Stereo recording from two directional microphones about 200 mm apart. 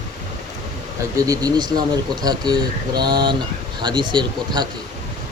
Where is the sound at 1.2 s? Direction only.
20° right (ahead or behind).